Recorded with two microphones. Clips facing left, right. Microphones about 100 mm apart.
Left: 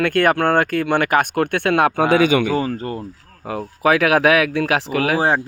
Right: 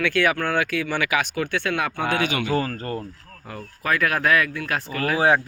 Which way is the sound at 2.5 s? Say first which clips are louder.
Left 3 dB; 20° left (ahead or behind).